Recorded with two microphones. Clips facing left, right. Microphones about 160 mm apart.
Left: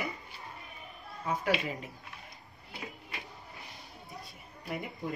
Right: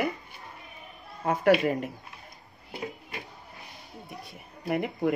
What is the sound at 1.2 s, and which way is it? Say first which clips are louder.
Speech: right 9 dB; 60° right (ahead or behind).